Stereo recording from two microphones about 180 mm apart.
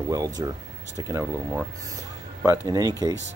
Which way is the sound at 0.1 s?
20° right (ahead or behind).